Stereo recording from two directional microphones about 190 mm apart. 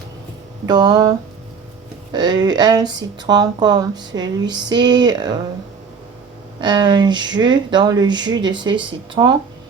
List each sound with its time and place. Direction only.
0.6 s speech: 20° right (ahead or behind)
2.1 s speech: 20° right (ahead or behind)
6.6 s speech: 25° right (ahead or behind)